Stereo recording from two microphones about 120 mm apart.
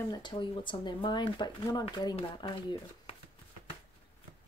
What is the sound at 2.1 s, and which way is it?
Speech, 45° left (ahead or behind).